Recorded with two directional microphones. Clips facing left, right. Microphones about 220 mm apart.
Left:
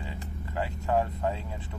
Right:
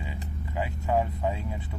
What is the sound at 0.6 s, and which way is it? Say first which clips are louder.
Speech: right 1 dB; 10° right (ahead or behind).